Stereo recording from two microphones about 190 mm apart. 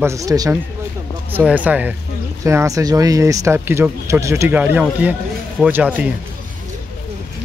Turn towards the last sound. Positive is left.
turn(degrees=-10)  # may be behind; listen again after turning